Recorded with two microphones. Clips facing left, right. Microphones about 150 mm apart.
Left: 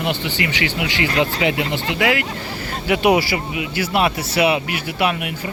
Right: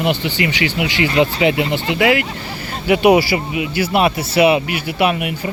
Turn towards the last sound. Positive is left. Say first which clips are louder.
# right 4 dB
turn(degrees=-15)  # may be behind; listen again after turning